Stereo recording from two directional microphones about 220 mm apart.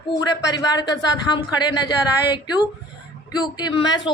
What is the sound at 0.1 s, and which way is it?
A woman's voice, 15° left (ahead or behind).